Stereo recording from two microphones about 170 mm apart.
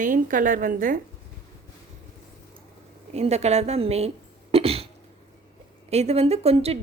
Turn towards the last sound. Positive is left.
turn(degrees=-35)  # may be behind; listen again after turning